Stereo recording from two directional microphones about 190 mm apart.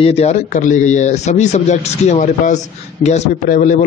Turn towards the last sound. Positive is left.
turn(degrees=40)  # may be behind; listen again after turning